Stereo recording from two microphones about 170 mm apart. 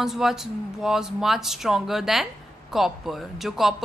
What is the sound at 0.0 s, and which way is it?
Speech, centre (ahead or behind).